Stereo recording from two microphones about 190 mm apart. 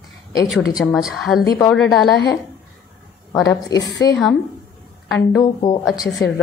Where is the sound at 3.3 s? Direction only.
15° left (ahead or behind).